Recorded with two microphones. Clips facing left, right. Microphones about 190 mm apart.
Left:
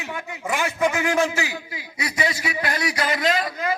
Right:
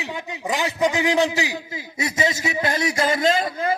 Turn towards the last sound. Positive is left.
turn(degrees=-30)  # may be behind; listen again after turning